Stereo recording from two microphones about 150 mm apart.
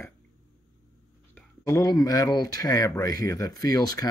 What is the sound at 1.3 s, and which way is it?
Speech, 20° left (ahead or behind).